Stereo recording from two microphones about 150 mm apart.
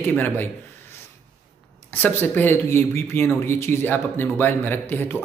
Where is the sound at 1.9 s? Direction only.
10° left (ahead or behind).